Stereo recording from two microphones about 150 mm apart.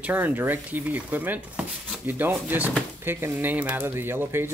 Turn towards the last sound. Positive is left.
turn(degrees=-15)  # may be behind; listen again after turning